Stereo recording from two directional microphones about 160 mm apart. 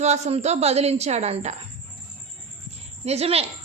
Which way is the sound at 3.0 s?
40° right (ahead or behind).